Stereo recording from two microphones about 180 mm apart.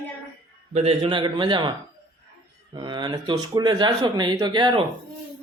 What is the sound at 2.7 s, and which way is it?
Speech, 25° right (ahead or behind).